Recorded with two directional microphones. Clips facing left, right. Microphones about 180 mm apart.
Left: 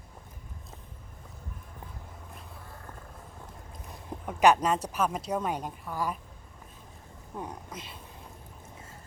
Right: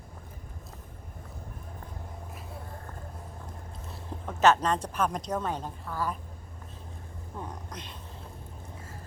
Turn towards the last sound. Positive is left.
turn(degrees=5)  # may be behind; listen again after turning